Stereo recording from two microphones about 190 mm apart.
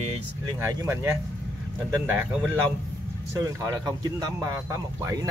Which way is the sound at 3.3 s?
15° right (ahead or behind).